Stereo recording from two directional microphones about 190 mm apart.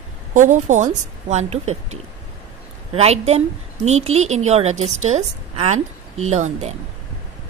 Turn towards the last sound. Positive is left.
turn(degrees=-35)  # may be behind; listen again after turning